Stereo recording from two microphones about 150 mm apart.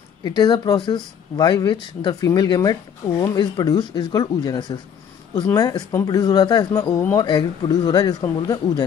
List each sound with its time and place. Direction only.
0.2 s speech: 30° left (ahead or behind)